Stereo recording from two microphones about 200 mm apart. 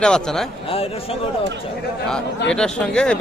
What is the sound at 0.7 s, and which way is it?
Speech, 30° left (ahead or behind).